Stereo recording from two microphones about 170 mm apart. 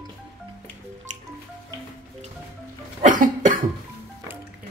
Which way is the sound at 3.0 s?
50° right (ahead or behind).